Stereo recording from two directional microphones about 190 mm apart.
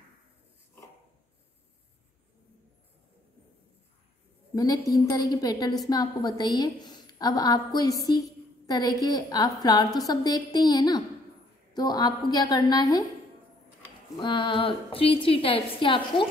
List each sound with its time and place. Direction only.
4.6 s a woman's voice: 20° left (ahead or behind)
14.2 s a woman's voice: 25° left (ahead or behind)